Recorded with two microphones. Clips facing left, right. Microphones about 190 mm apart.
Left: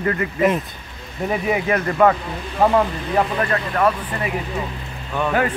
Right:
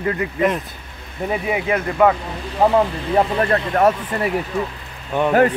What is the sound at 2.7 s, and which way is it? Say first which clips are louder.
Speech: right 2 dB; 30° right (ahead or behind).